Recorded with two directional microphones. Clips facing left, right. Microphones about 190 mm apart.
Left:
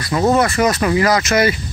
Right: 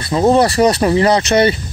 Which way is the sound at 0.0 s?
25° right (ahead or behind).